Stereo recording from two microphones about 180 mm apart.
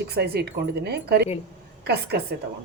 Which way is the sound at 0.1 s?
65° right (ahead or behind).